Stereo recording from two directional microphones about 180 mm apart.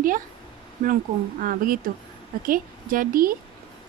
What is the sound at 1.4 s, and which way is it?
Speech, 50° right (ahead or behind).